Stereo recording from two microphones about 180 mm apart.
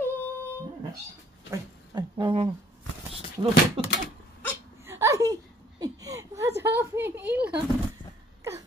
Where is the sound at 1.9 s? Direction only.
25° right (ahead or behind).